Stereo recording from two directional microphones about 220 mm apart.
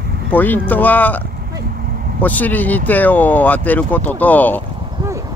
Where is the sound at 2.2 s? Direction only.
10° left (ahead or behind).